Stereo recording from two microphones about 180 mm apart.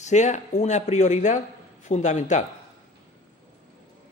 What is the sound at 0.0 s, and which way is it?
Speech, 40° left (ahead or behind).